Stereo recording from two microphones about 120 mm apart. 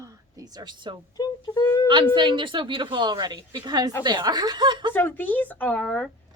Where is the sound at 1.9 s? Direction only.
45° right (ahead or behind).